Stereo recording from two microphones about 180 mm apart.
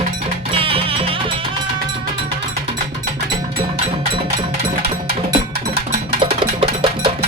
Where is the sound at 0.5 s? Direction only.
30° right (ahead or behind).